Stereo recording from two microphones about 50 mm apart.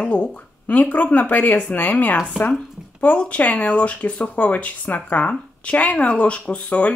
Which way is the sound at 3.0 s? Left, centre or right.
Left.